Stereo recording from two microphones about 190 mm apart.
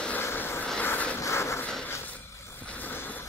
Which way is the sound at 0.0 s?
10° left (ahead or behind).